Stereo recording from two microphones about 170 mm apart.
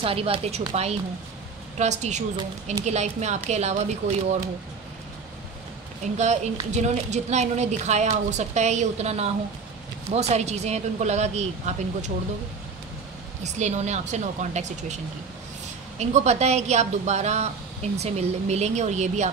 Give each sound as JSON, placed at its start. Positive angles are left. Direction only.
{"t": 0.0, "sound": "a woman's voice", "side_deg": -35}
{"t": 6.1, "sound": "a woman's voice", "side_deg": -40}
{"t": 13.4, "sound": "speech", "side_deg": -45}
{"t": 16.0, "sound": "a woman's voice", "side_deg": -40}